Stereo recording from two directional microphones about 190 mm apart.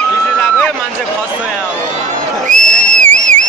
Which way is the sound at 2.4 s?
40° right (ahead or behind).